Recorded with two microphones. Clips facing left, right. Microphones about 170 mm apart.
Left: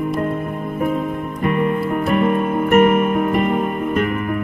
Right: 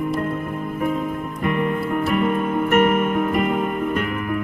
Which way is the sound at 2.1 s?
30° left (ahead or behind).